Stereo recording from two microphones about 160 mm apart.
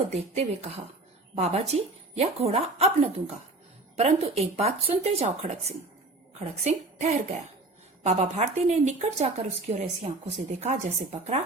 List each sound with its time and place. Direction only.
0.1 s speech: 45° right (ahead or behind)